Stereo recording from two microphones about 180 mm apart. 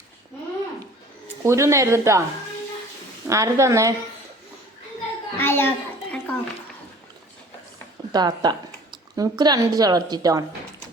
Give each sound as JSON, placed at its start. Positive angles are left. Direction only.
{"t": 1.5, "sound": "a woman's voice", "side_deg": -15}
{"t": 3.2, "sound": "a woman's voice", "side_deg": -15}
{"t": 5.4, "sound": "a sound", "side_deg": 10}
{"t": 8.1, "sound": "speech", "side_deg": -20}